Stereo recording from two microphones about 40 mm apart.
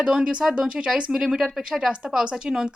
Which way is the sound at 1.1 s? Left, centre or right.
Centre.